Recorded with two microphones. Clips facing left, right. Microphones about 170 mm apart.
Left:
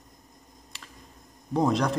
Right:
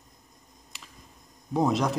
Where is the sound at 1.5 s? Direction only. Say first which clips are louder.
Left 1 dB; centre (ahead or behind).